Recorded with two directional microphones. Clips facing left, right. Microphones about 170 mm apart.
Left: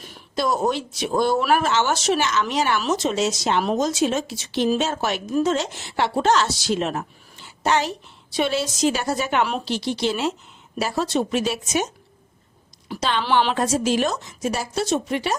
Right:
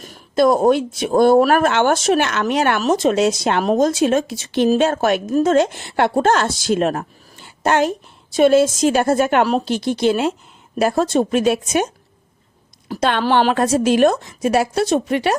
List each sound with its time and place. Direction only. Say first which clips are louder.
0.0 s speech: right 9 dB; 50° right (ahead or behind)
12.9 s a woman's voice: right 5 dB; 55° right (ahead or behind)